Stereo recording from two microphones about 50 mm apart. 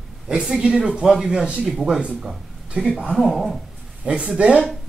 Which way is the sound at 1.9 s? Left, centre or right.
Centre.